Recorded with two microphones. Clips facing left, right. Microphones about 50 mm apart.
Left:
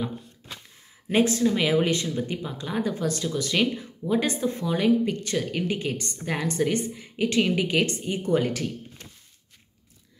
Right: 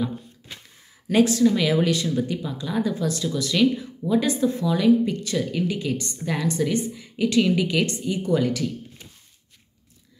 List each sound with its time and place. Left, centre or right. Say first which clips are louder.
1.0 s speech: right 3 dB; left